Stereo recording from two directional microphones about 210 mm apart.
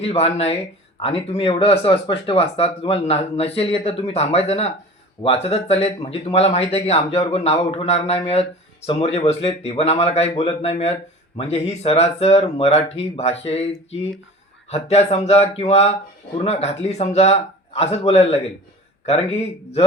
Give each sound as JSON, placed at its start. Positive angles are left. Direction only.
{"t": 0.0, "sound": "speech", "side_deg": 30}
{"t": 14.7, "sound": "speech", "side_deg": 30}